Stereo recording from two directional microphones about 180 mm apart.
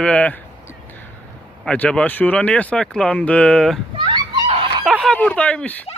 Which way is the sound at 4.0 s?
25° right (ahead or behind).